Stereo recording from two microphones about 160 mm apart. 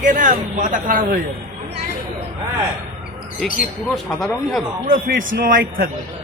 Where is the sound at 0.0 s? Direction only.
55° right (ahead or behind).